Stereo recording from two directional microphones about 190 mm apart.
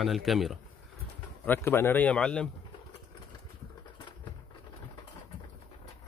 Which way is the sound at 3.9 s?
25° left (ahead or behind).